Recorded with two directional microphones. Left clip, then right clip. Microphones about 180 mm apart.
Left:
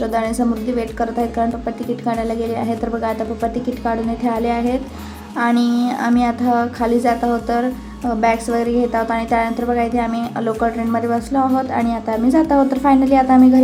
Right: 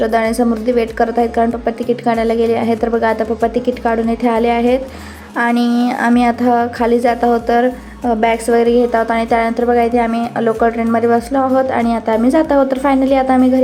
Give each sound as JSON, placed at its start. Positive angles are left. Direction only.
{"t": 0.0, "sound": "a woman's voice", "side_deg": -25}